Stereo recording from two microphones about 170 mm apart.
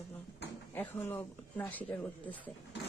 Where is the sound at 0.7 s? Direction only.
15° left (ahead or behind).